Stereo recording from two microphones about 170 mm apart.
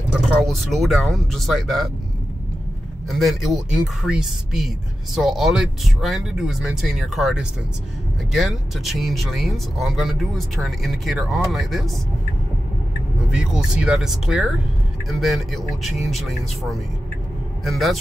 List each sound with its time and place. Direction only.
0.4 s speech: centre (ahead or behind)
3.1 s speech: centre (ahead or behind)
13.3 s speech: 5° right (ahead or behind)
17.6 s speech: centre (ahead or behind)